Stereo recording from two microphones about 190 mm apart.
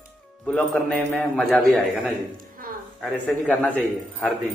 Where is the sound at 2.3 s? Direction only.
50° right (ahead or behind).